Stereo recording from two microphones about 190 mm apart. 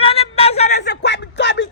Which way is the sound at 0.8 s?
60° left (ahead or behind).